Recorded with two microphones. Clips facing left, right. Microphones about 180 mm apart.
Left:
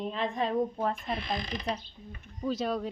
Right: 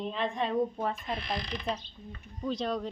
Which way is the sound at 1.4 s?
40° left (ahead or behind).